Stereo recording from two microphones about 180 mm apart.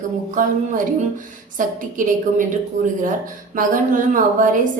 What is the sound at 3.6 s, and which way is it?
A woman's voice, 50° right (ahead or behind).